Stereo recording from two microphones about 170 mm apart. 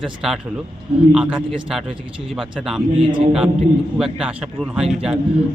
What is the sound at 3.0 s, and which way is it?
Speech, 30° right (ahead or behind).